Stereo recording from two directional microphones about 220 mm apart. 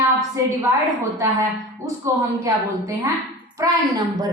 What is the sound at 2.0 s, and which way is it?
A woman's voice, 15° right (ahead or behind).